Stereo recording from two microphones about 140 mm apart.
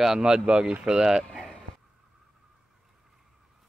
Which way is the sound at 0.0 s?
5° right (ahead or behind).